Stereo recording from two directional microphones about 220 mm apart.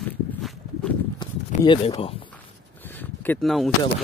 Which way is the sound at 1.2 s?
20° left (ahead or behind).